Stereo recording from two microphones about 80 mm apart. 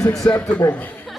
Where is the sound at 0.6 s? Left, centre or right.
Left.